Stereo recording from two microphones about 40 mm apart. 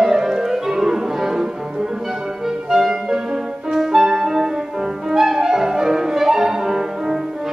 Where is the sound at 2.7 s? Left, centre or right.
Centre.